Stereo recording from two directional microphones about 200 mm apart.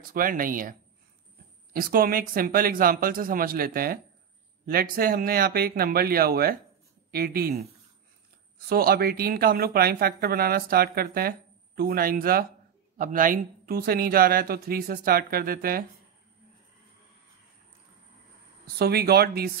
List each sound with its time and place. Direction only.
0.0 s speech: 45° right (ahead or behind)
8.6 s speech: 50° right (ahead or behind)
18.8 s speech: 50° right (ahead or behind)